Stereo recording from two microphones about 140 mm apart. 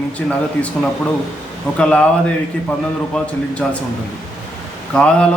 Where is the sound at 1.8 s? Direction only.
10° left (ahead or behind).